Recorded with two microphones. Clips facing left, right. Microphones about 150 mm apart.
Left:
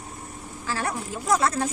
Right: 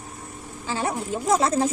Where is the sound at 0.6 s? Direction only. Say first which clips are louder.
Right 3 dB; 25° right (ahead or behind).